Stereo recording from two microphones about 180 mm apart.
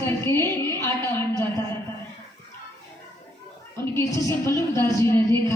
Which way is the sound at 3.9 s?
15° left (ahead or behind).